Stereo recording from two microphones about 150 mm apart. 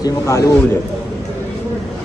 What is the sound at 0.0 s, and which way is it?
Speech, 20° left (ahead or behind).